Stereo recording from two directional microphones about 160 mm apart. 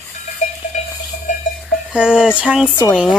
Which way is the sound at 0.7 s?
50° left (ahead or behind).